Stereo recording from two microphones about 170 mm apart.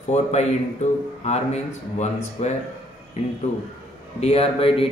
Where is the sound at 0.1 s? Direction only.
40° left (ahead or behind).